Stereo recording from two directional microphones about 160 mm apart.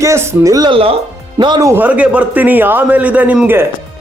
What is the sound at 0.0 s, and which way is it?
Speech, 15° right (ahead or behind).